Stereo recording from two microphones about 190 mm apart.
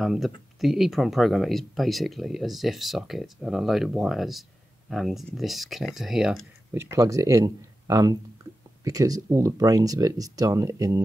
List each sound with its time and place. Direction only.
0.0 s speech: centre (ahead or behind)
6.8 s speech: 15° right (ahead or behind)